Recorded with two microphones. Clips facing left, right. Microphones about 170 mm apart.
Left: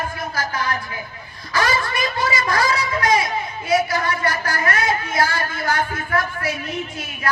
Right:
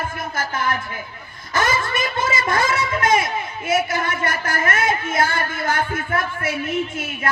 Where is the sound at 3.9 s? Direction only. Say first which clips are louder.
Left 1 dB; 25° right (ahead or behind).